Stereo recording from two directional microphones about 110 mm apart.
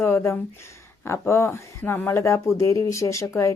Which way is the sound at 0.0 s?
25° left (ahead or behind).